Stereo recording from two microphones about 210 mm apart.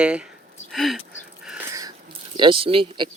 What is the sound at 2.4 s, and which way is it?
Speech, 25° right (ahead or behind).